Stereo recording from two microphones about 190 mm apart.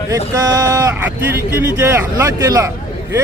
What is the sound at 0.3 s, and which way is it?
Speech, 20° right (ahead or behind).